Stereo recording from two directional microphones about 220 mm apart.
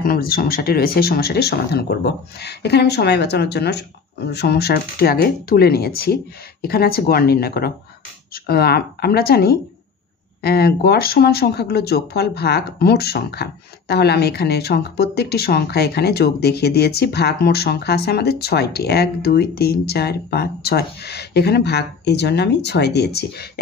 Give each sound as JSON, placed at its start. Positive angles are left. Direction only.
{"t": 0.0, "sound": "speech", "side_deg": 45}